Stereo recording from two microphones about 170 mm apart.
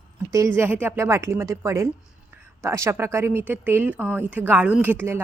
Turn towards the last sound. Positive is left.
turn(degrees=-10)  # may be behind; listen again after turning